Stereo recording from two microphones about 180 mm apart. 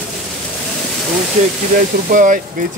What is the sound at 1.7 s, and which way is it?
Speech, 45° right (ahead or behind).